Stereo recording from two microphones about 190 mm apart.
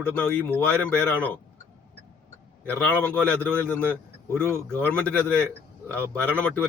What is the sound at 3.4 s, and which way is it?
Speech, 10° left (ahead or behind).